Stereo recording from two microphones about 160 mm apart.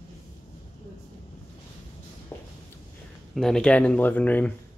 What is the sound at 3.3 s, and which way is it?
Speech, 5° left (ahead or behind).